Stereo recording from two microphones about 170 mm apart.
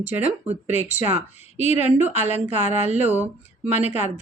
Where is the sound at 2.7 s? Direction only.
40° right (ahead or behind).